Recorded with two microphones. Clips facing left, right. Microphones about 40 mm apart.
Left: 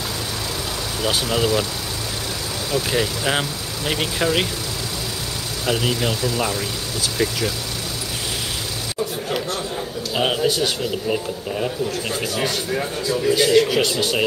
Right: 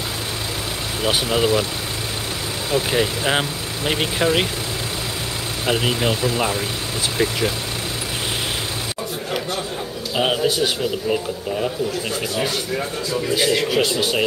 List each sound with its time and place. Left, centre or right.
1.0 s speech: centre
2.9 s speech: centre
5.7 s speech: right
10.1 s a man's voice: centre